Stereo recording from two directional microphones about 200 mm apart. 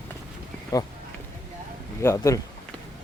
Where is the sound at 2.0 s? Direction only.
15° left (ahead or behind).